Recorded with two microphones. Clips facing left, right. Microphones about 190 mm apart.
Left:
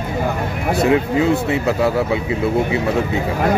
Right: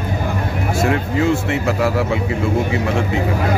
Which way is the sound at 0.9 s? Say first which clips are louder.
Left 3 dB; 20° left (ahead or behind).